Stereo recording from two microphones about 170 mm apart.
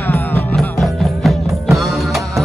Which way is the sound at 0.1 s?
Centre (ahead or behind).